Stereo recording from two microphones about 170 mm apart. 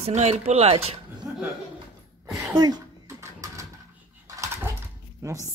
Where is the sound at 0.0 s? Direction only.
40° right (ahead or behind).